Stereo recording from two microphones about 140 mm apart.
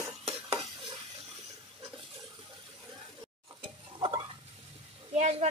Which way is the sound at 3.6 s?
35° right (ahead or behind).